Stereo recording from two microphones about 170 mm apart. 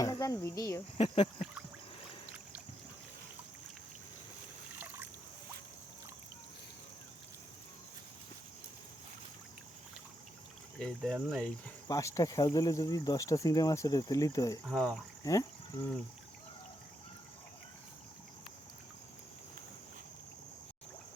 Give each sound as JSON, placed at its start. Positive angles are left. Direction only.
{"t": 0.0, "sound": "speech", "side_deg": 20}
{"t": 0.9, "sound": "speech", "side_deg": 35}
{"t": 10.8, "sound": "speech", "side_deg": 5}
{"t": 11.9, "sound": "speech", "side_deg": 20}
{"t": 14.7, "sound": "speech", "side_deg": 0}
{"t": 15.2, "sound": "speech", "side_deg": 20}